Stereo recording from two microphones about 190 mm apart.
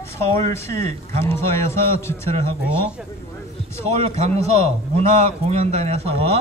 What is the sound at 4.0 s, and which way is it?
A man's voice, 35° right (ahead or behind).